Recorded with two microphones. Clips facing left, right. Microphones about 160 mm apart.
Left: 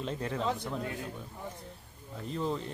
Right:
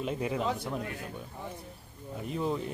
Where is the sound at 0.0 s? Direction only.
10° right (ahead or behind).